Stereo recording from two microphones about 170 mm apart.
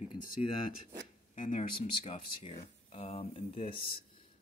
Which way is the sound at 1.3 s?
50° left (ahead or behind).